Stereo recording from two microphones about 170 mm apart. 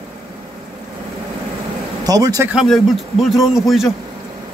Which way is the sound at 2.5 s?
Centre (ahead or behind).